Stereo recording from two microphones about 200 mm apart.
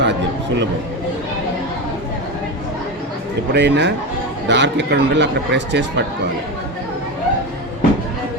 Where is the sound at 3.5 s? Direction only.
60° right (ahead or behind).